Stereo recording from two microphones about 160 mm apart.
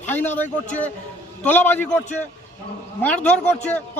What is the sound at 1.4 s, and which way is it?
Speech, 10° left (ahead or behind).